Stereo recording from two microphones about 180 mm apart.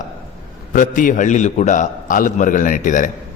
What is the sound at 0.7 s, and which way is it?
A man's voice, 50° left (ahead or behind).